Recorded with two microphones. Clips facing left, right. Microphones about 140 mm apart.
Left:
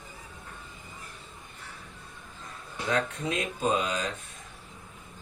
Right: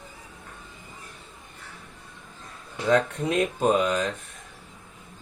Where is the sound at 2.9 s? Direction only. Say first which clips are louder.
Right 7 dB; 50° right (ahead or behind).